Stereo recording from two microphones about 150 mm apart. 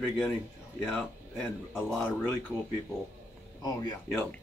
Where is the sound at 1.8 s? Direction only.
10° left (ahead or behind).